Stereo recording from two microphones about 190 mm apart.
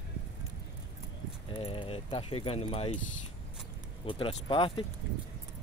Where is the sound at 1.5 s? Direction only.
30° left (ahead or behind).